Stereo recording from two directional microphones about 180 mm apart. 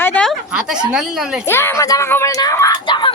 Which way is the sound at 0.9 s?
5° right (ahead or behind).